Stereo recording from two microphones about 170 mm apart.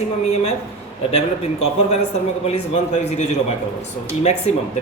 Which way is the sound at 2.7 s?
40° left (ahead or behind).